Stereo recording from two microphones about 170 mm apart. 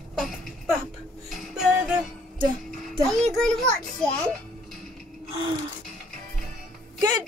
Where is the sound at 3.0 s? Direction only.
Centre (ahead or behind).